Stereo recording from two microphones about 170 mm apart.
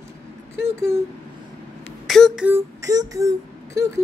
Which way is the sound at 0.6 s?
15° right (ahead or behind).